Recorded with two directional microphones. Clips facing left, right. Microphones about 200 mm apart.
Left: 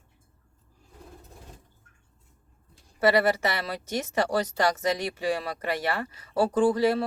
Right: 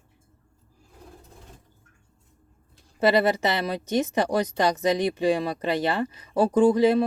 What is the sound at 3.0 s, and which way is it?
Speech, 20° right (ahead or behind).